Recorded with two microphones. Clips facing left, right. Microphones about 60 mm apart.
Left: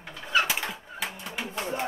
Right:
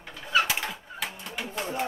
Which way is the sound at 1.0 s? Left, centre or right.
Centre.